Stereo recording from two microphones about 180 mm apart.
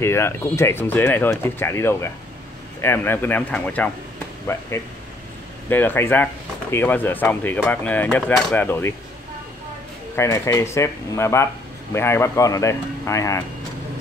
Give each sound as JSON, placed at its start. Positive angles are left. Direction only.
{"t": 0.0, "sound": "speech", "side_deg": 15}
{"t": 10.1, "sound": "speech", "side_deg": 15}